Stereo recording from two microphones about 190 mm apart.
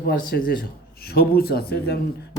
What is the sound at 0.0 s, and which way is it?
A man's voice, 50° left (ahead or behind).